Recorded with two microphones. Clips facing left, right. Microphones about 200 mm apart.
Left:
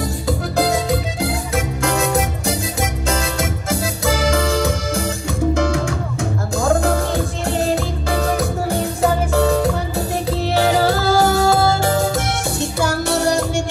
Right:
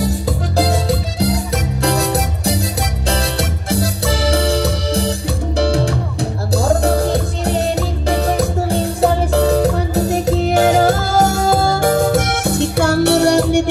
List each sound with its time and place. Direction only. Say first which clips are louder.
0.6 s music: right 1 dB; 35° right (ahead or behind); by 13.7 s 65° right (ahead or behind)